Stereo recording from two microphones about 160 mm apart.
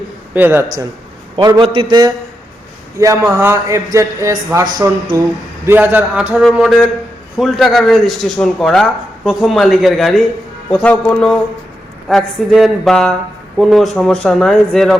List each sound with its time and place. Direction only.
0.3 s a man's voice: 10° right (ahead or behind)
1.4 s a man's voice: 25° right (ahead or behind); by 14.9 s 5° left (ahead or behind)